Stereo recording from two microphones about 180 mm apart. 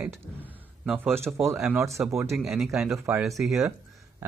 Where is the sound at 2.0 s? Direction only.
Centre (ahead or behind).